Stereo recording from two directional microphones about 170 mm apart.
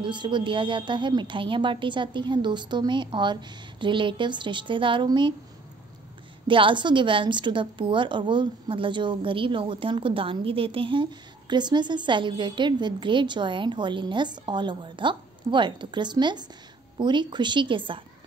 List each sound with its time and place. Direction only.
0.0 s a woman's voice: 25° right (ahead or behind)
6.4 s a woman's voice: 30° right (ahead or behind)